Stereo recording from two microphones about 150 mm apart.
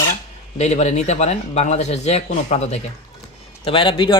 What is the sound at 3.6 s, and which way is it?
Speech, 35° left (ahead or behind).